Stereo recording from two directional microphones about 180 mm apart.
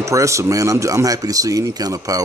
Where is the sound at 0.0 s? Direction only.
15° right (ahead or behind).